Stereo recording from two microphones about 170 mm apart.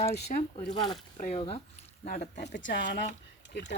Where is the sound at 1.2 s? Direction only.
45° left (ahead or behind).